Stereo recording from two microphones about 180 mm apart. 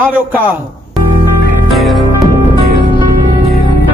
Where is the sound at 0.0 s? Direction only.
10° right (ahead or behind).